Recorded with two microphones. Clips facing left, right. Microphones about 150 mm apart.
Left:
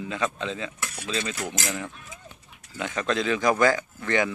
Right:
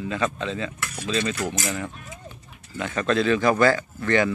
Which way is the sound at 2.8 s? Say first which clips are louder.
Right 4 dB; 15° left (ahead or behind).